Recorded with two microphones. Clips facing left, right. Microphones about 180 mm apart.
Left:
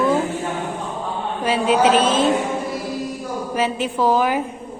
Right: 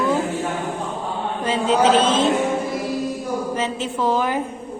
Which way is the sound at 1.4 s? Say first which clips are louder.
Left 1 dB; 10° left (ahead or behind).